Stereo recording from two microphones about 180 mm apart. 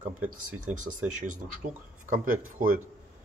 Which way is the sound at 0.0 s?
10° right (ahead or behind).